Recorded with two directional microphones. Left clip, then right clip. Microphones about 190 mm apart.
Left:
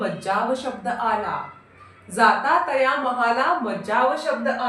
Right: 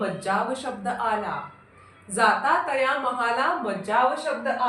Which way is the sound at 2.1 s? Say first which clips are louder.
Left 3 dB; 25° right (ahead or behind).